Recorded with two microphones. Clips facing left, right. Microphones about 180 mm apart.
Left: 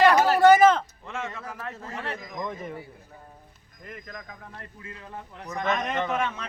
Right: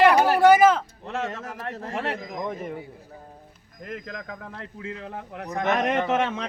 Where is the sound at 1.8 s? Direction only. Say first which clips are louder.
Right 7 dB; 90° right.